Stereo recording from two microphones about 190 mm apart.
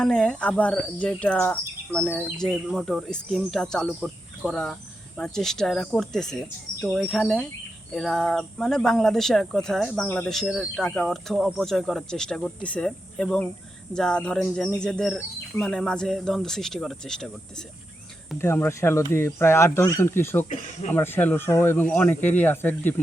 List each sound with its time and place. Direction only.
0.0 s speech: 5° left (ahead or behind)
18.3 s speech: 10° left (ahead or behind)
20.5 s speech: 40° left (ahead or behind)
20.9 s speech: 10° left (ahead or behind)